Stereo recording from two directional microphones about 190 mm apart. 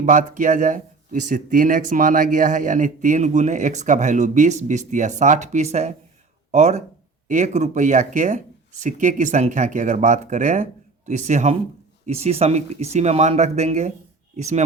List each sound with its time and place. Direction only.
0.0 s speech: 40° right (ahead or behind)